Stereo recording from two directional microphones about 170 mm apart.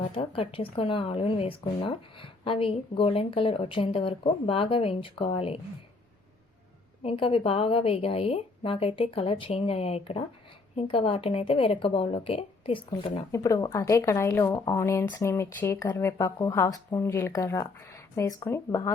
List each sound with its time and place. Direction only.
0.1 s a woman's voice: 30° left (ahead or behind)
7.0 s a woman's voice: 35° left (ahead or behind)
13.3 s speech: 20° left (ahead or behind)